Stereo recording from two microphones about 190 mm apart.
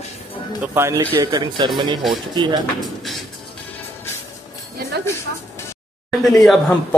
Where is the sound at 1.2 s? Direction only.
25° right (ahead or behind).